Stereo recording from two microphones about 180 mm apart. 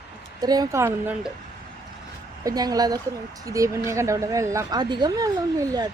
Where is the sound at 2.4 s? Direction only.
20° right (ahead or behind).